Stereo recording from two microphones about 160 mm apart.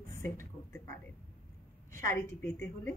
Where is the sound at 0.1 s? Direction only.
15° left (ahead or behind).